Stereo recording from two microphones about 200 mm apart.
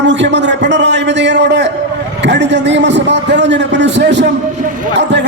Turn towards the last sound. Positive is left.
turn(degrees=-60)  # may be behind; listen again after turning